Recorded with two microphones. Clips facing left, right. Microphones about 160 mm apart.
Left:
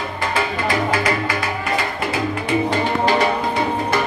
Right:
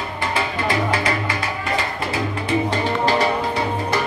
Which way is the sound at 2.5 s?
30° right (ahead or behind).